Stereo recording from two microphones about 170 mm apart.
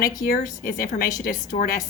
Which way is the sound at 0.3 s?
55° left (ahead or behind).